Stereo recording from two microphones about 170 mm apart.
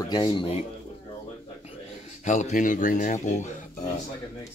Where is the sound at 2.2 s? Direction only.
45° left (ahead or behind).